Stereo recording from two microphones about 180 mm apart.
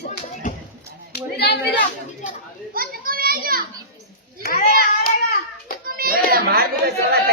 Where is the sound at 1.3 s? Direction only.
65° left (ahead or behind).